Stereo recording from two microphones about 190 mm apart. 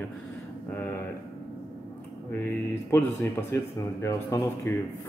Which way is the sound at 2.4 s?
15° left (ahead or behind).